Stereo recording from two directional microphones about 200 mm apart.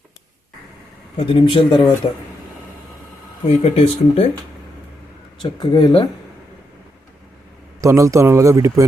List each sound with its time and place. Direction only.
1.1 s speech: 25° left (ahead or behind)
3.4 s speech: 30° left (ahead or behind)
5.4 s speech: 25° left (ahead or behind)
7.8 s speech: 15° right (ahead or behind)